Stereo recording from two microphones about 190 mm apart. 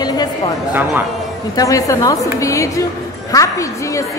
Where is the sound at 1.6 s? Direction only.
15° left (ahead or behind).